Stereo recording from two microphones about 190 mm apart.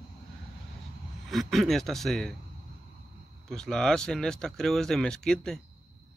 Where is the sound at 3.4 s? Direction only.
Centre (ahead or behind).